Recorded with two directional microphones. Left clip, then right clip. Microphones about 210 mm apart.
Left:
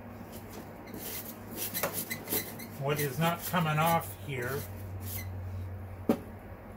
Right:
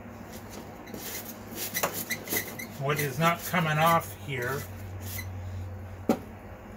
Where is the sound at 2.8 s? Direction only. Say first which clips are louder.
Right 4 dB; 20° right (ahead or behind).